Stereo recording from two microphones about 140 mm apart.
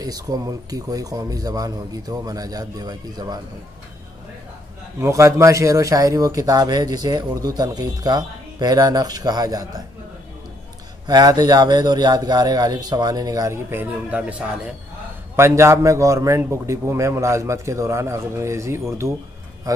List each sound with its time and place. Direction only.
0.0 s a man's voice: 25° right (ahead or behind)
5.0 s a man's voice: 20° right (ahead or behind)
11.1 s a man's voice: 25° right (ahead or behind); by 14.6 s 10° right (ahead or behind)
15.3 s a man's voice: 20° right (ahead or behind)